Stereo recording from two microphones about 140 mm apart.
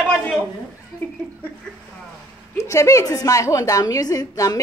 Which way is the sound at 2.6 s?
20° left (ahead or behind).